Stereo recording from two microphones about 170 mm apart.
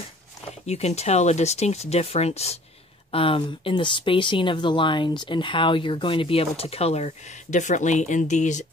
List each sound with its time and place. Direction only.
0.7 s speech: 40° left (ahead or behind)